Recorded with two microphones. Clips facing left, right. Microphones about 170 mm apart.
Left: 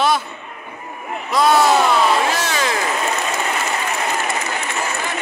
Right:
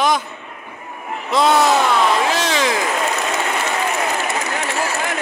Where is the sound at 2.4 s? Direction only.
15° right (ahead or behind).